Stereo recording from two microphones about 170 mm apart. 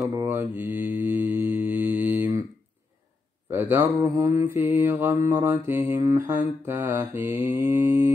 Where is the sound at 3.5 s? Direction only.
15° right (ahead or behind).